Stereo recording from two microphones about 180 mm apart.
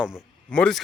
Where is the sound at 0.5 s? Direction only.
5° left (ahead or behind).